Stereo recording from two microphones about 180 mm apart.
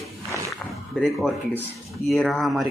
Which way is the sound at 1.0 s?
Centre (ahead or behind).